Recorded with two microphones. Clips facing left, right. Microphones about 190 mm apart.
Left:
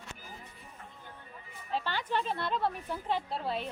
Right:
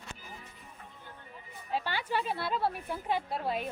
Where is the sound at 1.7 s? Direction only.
10° right (ahead or behind).